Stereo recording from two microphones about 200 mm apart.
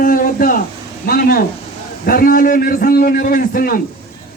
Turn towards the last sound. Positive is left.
turn(degrees=45)  # may be behind; listen again after turning